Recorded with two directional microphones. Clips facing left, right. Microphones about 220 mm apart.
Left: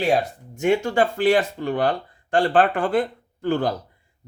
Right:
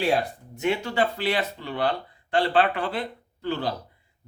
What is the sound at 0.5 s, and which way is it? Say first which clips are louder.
Speech: left 6 dB; 45° left (ahead or behind).